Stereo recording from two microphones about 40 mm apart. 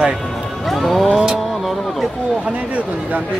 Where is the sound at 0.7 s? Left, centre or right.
Centre.